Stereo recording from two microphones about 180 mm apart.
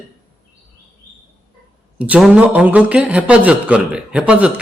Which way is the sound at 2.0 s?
5° right (ahead or behind).